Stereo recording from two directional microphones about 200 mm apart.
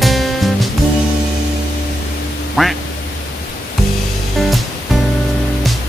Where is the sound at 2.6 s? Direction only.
Centre (ahead or behind).